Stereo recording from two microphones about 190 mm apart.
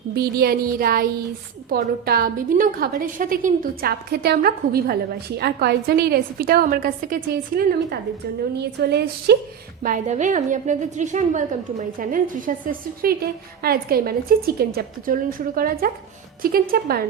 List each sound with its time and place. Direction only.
0.2 s a woman's voice: 55° right (ahead or behind)
9.8 s a woman's voice: 45° right (ahead or behind)